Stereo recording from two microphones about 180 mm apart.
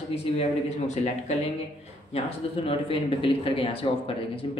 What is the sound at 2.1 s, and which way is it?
Speech, 30° left (ahead or behind).